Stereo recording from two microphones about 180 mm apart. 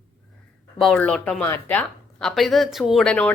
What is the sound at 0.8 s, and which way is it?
Speech, 5° left (ahead or behind).